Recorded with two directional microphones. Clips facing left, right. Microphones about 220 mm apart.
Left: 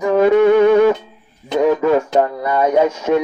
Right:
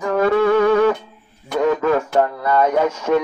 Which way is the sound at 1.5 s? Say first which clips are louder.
Left 3 dB; 20° left (ahead or behind).